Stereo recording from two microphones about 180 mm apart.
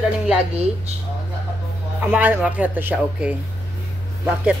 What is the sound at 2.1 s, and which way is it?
Speech, 10° right (ahead or behind).